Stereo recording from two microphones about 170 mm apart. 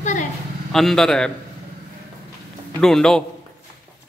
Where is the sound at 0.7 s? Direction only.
5° left (ahead or behind).